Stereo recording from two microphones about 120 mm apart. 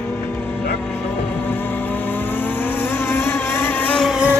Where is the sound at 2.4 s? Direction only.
15° left (ahead or behind).